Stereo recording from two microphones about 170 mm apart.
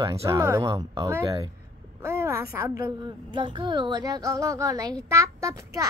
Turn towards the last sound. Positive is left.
turn(degrees=-20)  # may be behind; listen again after turning